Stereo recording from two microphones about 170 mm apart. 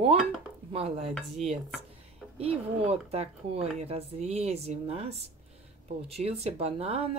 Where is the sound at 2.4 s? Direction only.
35° right (ahead or behind).